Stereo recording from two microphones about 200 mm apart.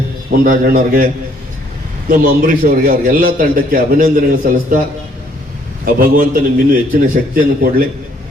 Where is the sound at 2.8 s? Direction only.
45° right (ahead or behind).